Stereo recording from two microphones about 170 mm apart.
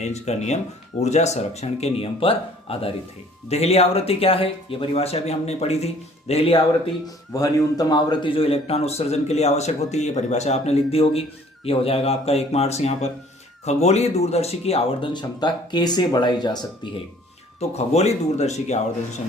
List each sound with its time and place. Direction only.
0.0 s speech: 40° left (ahead or behind)
7.3 s speech: 20° left (ahead or behind)
17.6 s speech: 40° left (ahead or behind)